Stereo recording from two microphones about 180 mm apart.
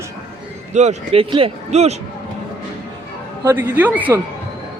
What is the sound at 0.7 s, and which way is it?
Speech, 40° right (ahead or behind).